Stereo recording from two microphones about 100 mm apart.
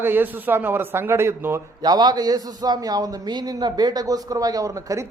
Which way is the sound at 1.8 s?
45° right (ahead or behind).